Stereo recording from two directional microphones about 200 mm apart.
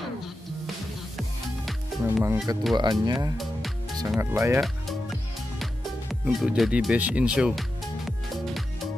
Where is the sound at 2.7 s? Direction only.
20° right (ahead or behind).